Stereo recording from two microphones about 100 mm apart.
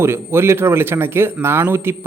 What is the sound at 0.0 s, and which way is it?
Speech, 25° right (ahead or behind).